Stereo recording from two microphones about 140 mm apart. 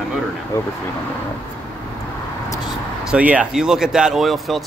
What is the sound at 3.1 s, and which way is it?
Speech, 10° right (ahead or behind).